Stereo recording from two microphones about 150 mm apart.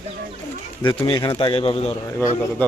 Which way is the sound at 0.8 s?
30° left (ahead or behind).